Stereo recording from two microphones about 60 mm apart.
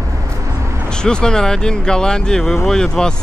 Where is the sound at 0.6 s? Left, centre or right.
Right.